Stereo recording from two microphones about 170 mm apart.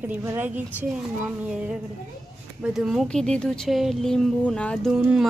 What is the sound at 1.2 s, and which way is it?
Speech, 5° right (ahead or behind).